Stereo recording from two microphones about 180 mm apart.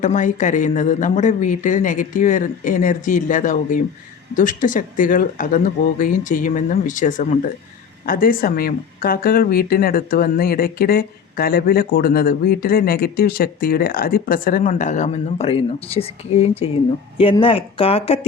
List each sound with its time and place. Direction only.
0.0 s speech: 45° left (ahead or behind)